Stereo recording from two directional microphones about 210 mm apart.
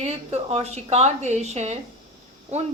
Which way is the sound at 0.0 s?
30° right (ahead or behind).